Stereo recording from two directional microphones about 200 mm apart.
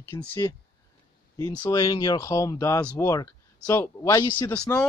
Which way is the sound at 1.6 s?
15° left (ahead or behind).